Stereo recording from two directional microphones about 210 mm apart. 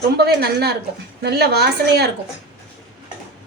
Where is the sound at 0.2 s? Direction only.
50° right (ahead or behind).